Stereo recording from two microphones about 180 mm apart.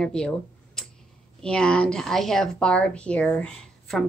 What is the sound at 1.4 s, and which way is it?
A woman's voice, 5° left (ahead or behind).